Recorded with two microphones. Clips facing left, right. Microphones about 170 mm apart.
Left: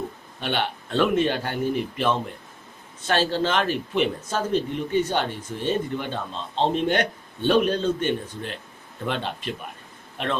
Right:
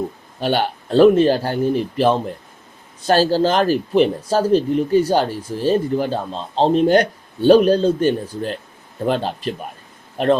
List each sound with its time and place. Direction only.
0.3 s speech: 40° right (ahead or behind)